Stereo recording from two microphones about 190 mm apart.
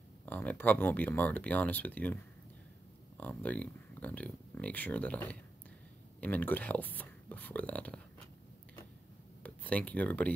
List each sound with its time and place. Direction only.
0.2 s speech: 10° left (ahead or behind)
3.2 s speech: 10° left (ahead or behind)
9.4 s speech: 10° left (ahead or behind)